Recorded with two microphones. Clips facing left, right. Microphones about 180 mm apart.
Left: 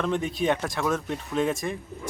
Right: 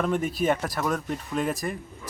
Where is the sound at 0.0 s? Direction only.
5° right (ahead or behind).